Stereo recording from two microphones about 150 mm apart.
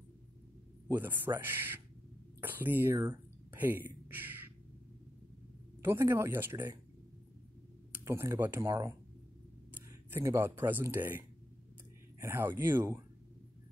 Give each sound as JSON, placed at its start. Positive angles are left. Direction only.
{"t": 0.8, "sound": "speech", "side_deg": -15}
{"t": 5.8, "sound": "speech", "side_deg": -15}
{"t": 7.9, "sound": "speech", "side_deg": -15}
{"t": 10.1, "sound": "speech", "side_deg": -15}